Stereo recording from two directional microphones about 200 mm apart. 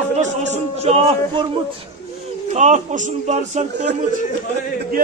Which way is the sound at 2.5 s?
35° right (ahead or behind).